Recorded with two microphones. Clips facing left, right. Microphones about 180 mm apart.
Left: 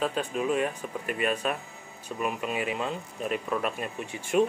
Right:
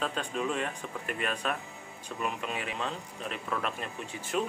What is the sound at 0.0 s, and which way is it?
Speech, 5° left (ahead or behind).